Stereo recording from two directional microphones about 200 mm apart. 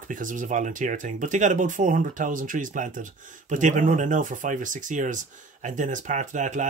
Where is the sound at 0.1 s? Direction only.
40° right (ahead or behind).